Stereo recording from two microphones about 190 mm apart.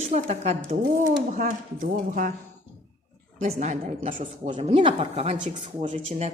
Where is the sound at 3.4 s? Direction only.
40° right (ahead or behind).